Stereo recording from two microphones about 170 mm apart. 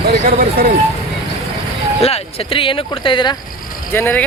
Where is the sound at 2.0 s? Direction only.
35° left (ahead or behind).